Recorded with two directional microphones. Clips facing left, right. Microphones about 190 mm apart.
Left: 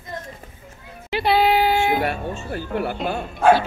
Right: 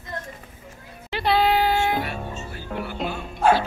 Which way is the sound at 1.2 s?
10° left (ahead or behind).